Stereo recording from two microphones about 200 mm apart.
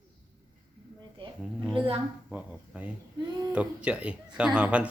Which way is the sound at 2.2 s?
5° right (ahead or behind).